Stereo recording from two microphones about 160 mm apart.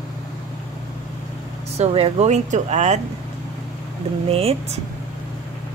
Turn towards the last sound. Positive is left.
turn(degrees=-40)  # may be behind; listen again after turning